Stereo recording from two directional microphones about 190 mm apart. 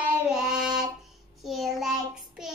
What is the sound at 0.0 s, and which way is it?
Child singing, 5° right (ahead or behind).